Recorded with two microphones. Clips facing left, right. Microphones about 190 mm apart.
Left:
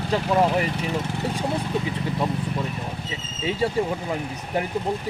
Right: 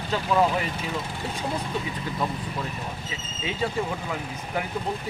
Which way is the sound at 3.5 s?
35° left (ahead or behind).